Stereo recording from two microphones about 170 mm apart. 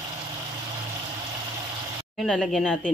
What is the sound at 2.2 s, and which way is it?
Speech, centre (ahead or behind).